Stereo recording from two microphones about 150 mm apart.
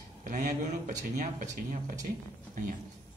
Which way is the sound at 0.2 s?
60° right (ahead or behind).